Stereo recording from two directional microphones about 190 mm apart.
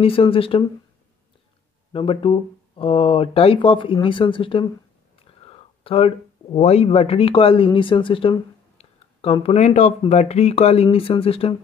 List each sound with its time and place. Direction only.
0.0 s speech: 30° left (ahead or behind)
1.9 s speech: 25° left (ahead or behind)